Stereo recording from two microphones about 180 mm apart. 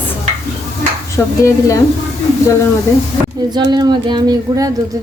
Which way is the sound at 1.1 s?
15° left (ahead or behind).